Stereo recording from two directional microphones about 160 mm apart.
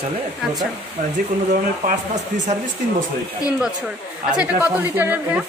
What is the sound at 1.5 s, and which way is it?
Speech, 50° right (ahead or behind).